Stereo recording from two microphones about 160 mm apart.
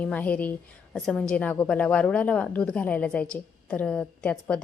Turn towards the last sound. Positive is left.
turn(degrees=5)  # may be behind; listen again after turning